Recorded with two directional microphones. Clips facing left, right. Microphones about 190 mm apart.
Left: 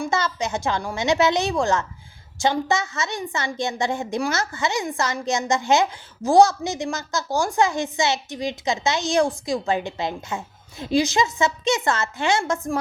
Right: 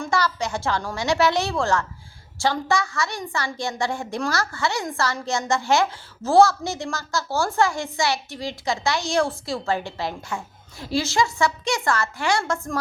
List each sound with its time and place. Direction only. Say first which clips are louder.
0.0 s a woman's voice: even; 20° left (ahead or behind)